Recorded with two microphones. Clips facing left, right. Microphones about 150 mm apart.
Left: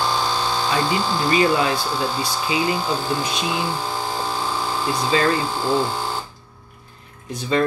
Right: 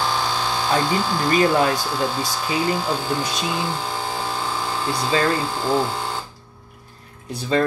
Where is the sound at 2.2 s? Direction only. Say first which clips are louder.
Left 1 dB; 15° left (ahead or behind).